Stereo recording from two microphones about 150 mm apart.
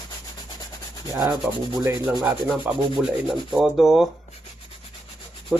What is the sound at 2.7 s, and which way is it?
A man's voice, 10° right (ahead or behind).